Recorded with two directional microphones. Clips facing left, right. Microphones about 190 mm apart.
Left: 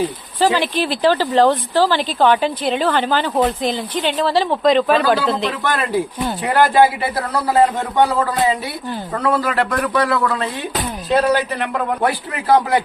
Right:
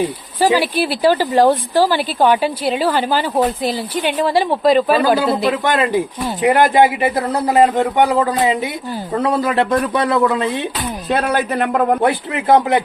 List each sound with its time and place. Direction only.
0.3 s speech: 10° right (ahead or behind)
11.1 s a man's voice: 55° right (ahead or behind)
12.0 s speech: 25° right (ahead or behind)